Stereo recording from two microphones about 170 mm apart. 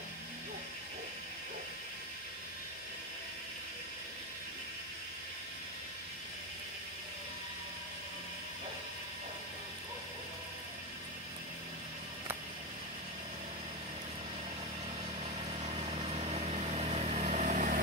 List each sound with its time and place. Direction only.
15.6 s vehicle: 35° right (ahead or behind)